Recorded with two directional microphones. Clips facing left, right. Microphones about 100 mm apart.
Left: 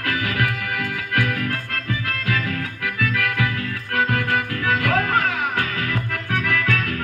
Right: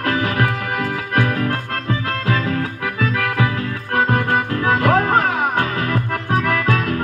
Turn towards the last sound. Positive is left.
turn(degrees=-25)  # may be behind; listen again after turning